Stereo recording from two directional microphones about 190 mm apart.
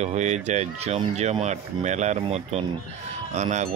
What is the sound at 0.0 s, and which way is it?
Speech, 35° right (ahead or behind).